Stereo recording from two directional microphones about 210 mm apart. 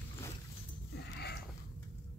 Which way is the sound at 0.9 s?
50° left (ahead or behind).